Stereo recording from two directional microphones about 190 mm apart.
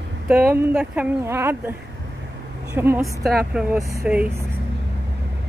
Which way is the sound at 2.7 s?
15° right (ahead or behind).